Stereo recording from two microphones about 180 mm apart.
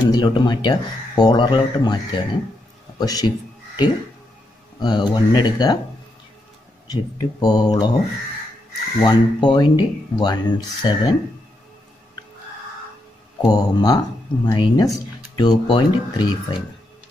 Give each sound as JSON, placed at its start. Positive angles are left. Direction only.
{"t": 0.0, "sound": "a man's voice", "side_deg": 25}
{"t": 6.9, "sound": "speech", "side_deg": 20}
{"t": 9.0, "sound": "speech", "side_deg": 25}
{"t": 13.4, "sound": "speech", "side_deg": 25}